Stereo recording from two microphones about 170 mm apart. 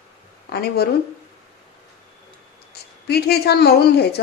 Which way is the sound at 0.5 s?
70° left (ahead or behind).